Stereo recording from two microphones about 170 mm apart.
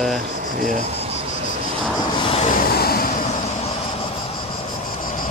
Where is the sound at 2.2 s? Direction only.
35° left (ahead or behind).